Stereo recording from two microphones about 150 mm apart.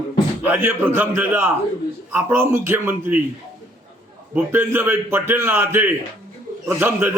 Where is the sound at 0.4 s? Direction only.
10° right (ahead or behind).